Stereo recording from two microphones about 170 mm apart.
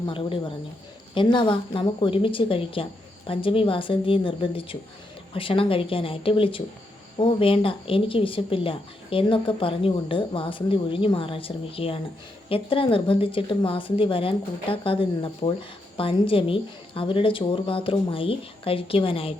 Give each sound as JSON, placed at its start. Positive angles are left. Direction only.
{"t": 0.0, "sound": "a woman's voice", "side_deg": 30}